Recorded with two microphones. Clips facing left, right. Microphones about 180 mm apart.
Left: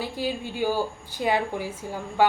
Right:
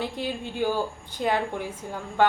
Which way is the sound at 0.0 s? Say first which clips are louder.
Left 1 dB; 5° left (ahead or behind).